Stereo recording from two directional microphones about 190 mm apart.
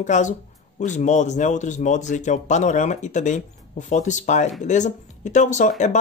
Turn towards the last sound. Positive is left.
turn(degrees=40)  # may be behind; listen again after turning